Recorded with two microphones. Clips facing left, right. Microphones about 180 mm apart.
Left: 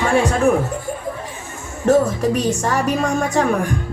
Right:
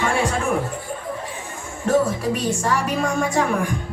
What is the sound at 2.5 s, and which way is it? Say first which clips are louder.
Music: left 3 dB; 45° left (ahead or behind).